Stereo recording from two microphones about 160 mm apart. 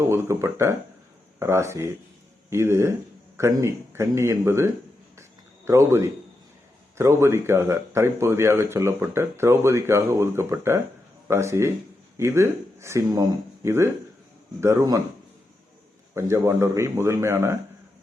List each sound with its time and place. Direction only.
0.1 s a man's voice: 15° right (ahead or behind)
16.1 s a man's voice: 15° right (ahead or behind)